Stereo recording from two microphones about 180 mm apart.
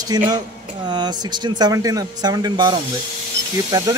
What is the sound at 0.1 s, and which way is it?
Speech, 20° right (ahead or behind).